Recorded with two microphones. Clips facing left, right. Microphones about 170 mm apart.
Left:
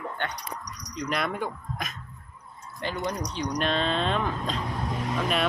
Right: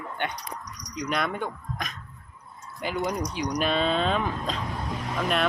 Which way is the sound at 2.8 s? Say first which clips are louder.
Right 2 dB; 10° right (ahead or behind).